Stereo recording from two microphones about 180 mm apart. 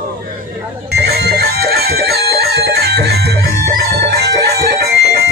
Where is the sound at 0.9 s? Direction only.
65° right (ahead or behind).